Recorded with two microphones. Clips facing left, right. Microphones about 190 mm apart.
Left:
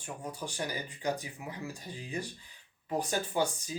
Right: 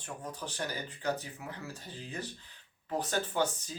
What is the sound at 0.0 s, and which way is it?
Speech, 10° left (ahead or behind).